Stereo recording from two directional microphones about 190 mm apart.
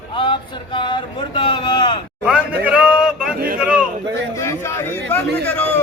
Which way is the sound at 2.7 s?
5° right (ahead or behind).